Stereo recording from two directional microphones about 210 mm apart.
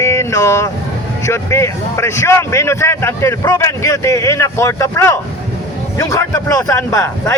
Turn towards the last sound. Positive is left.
turn(degrees=15)  # may be behind; listen again after turning